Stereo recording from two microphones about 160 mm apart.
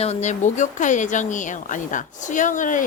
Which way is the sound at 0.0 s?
45° left (ahead or behind).